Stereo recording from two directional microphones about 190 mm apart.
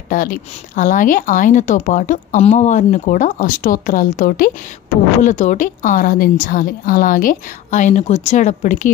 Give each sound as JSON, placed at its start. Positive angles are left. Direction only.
{"t": 0.1, "sound": "speech", "side_deg": 45}